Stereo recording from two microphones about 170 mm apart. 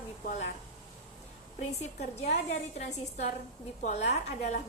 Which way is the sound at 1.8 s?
40° left (ahead or behind).